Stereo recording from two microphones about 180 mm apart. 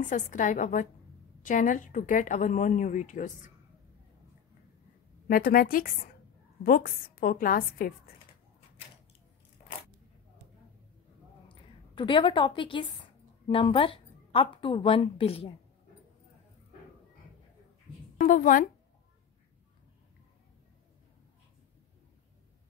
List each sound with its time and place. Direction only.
0.1 s a woman's voice: 45° left (ahead or behind)
5.3 s a woman's voice: 55° left (ahead or behind)
11.4 s a sound: 25° left (ahead or behind)
13.5 s speech: 30° left (ahead or behind)
18.2 s a woman's voice: 50° left (ahead or behind)